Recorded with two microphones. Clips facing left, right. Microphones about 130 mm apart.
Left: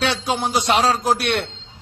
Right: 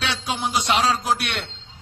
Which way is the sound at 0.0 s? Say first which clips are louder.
Left 5 dB; 35° left (ahead or behind).